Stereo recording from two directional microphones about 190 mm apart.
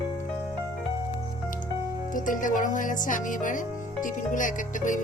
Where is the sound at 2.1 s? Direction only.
45° left (ahead or behind).